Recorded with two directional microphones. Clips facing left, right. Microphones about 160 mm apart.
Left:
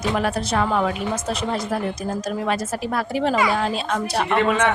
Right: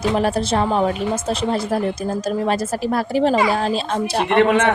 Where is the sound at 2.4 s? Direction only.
35° right (ahead or behind).